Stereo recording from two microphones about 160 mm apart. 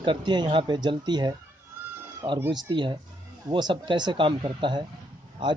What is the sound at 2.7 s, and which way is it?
Speech, 30° right (ahead or behind).